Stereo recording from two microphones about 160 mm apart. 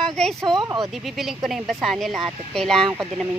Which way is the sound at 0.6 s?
25° right (ahead or behind).